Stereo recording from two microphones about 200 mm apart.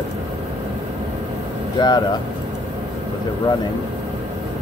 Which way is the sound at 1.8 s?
25° left (ahead or behind).